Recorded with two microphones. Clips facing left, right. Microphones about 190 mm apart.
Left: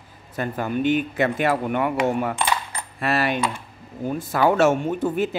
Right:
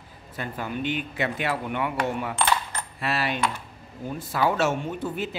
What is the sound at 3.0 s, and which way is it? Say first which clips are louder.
Speech: left 4 dB; 50° left (ahead or behind).